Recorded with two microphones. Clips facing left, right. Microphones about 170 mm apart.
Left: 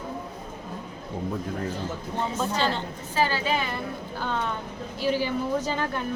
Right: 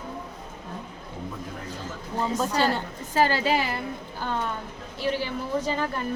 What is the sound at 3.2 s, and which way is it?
Speech, 40° right (ahead or behind).